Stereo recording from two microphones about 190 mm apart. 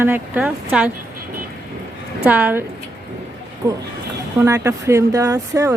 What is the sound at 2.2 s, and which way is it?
Speech, 10° right (ahead or behind).